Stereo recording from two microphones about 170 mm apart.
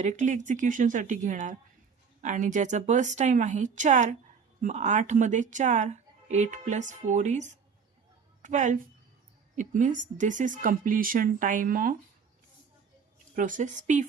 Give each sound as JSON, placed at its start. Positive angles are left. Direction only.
{"t": 0.0, "sound": "a woman's voice", "side_deg": -45}
{"t": 13.3, "sound": "speech", "side_deg": -50}